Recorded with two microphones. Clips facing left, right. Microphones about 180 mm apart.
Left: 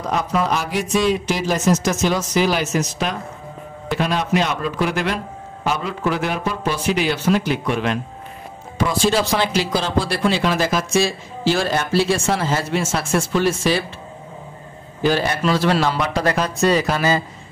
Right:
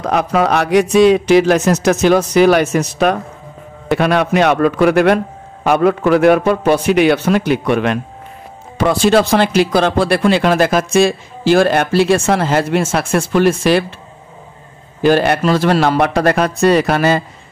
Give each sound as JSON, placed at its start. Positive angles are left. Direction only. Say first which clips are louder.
{"t": 0.0, "sound": "speech", "louder": "right 6 dB", "side_deg": -70}
{"t": 15.0, "sound": "speech", "louder": "right 7 dB", "side_deg": -60}